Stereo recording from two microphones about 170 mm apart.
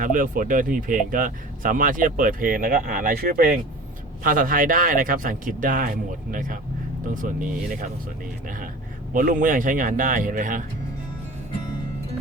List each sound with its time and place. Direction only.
0.0 s speech: 55° right (ahead or behind)